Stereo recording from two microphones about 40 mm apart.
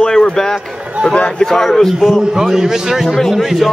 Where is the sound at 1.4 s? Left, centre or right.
Centre.